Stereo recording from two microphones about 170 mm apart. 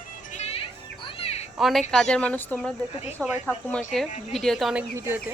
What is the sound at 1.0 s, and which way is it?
Children playing, 35° left (ahead or behind).